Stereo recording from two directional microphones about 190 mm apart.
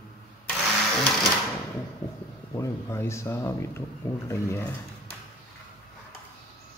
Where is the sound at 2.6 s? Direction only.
15° left (ahead or behind).